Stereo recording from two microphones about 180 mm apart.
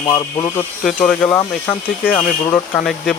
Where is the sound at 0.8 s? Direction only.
5° left (ahead or behind).